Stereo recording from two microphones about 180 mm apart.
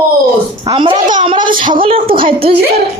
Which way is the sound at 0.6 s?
30° right (ahead or behind).